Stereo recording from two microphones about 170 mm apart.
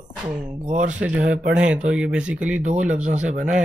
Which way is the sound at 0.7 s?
45° right (ahead or behind).